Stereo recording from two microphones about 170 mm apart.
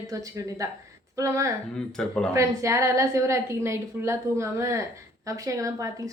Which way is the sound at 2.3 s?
15° right (ahead or behind).